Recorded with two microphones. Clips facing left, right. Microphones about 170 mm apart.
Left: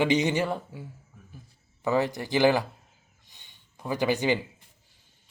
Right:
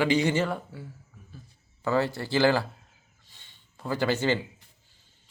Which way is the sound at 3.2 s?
15° left (ahead or behind).